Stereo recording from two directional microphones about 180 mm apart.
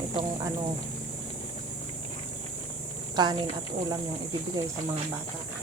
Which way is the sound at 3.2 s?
25° right (ahead or behind).